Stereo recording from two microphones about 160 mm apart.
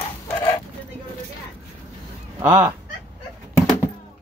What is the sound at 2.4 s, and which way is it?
Fowl, 15° right (ahead or behind).